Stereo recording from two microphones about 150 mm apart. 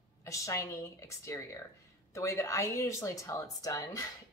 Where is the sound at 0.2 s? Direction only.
20° left (ahead or behind).